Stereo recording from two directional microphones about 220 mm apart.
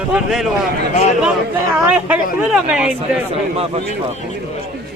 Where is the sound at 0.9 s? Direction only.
30° left (ahead or behind).